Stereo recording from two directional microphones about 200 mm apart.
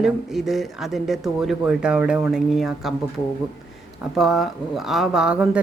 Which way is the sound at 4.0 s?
Centre (ahead or behind).